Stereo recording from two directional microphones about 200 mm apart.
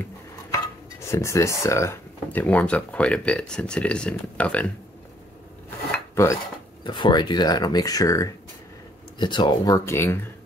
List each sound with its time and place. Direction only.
1.1 s speech: 15° left (ahead or behind)
5.9 s cutlery: 15° left (ahead or behind)
6.8 s speech: 20° left (ahead or behind)